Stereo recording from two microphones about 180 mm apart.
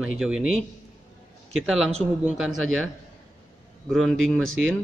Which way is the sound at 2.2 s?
5° right (ahead or behind).